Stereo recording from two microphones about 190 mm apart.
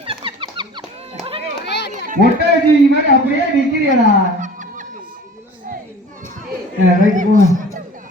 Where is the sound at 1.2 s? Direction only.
30° right (ahead or behind).